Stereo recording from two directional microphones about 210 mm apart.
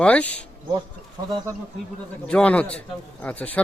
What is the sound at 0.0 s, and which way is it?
Speech, 5° left (ahead or behind).